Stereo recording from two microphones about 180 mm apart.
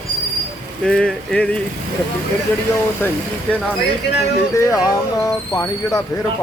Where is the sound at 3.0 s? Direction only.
10° left (ahead or behind).